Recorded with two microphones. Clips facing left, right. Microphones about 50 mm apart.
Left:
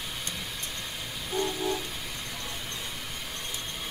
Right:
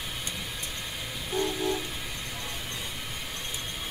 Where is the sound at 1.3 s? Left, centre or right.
Centre.